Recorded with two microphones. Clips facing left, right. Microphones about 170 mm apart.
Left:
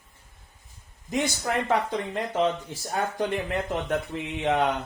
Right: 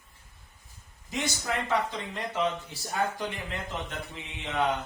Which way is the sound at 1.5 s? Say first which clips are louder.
Left 3 dB; 55° left (ahead or behind).